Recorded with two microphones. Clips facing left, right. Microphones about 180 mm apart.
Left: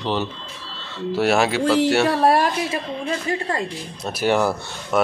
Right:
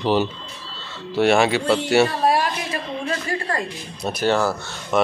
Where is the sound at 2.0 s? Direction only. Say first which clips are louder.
Left 3 dB; 60° left (ahead or behind).